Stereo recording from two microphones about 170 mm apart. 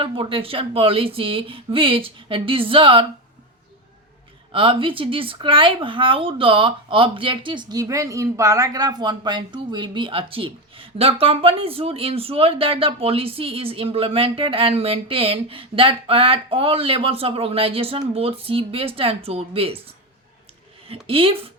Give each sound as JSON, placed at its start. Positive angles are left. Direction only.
{"t": 0.0, "sound": "speech", "side_deg": -30}
{"t": 4.5, "sound": "speech", "side_deg": -30}
{"t": 20.8, "sound": "speech", "side_deg": -35}